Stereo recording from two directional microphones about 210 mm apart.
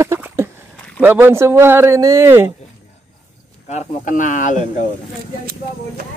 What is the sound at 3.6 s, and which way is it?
Speech, 35° left (ahead or behind).